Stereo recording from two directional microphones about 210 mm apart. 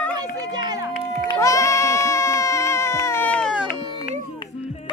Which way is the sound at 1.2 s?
15° left (ahead or behind).